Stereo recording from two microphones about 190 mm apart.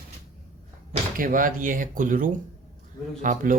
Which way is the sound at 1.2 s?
45° right (ahead or behind).